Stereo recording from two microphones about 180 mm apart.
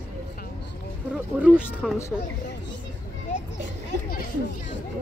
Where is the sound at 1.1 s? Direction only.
5° right (ahead or behind).